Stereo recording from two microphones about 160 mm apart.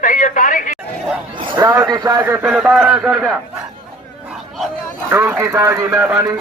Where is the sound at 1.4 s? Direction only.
30° right (ahead or behind).